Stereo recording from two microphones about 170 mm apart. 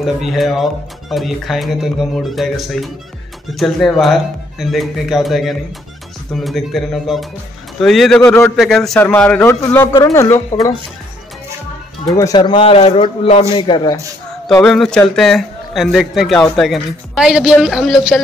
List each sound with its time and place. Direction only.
0.0 s a man's voice: centre (ahead or behind); by 10.7 s 15° left (ahead or behind)
12.2 s a man's voice: 20° left (ahead or behind)
14.6 s a man's voice: 5° left (ahead or behind)